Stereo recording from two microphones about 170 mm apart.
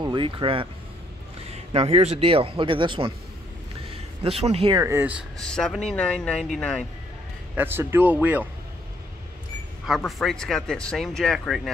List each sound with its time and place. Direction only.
0.0 s speech: 30° right (ahead or behind)
1.7 s speech: 35° right (ahead or behind)
4.7 s speech: 15° right (ahead or behind)
5.4 s speech: 5° left (ahead or behind)
7.5 s speech: 10° right (ahead or behind)
9.8 s speech: centre (ahead or behind)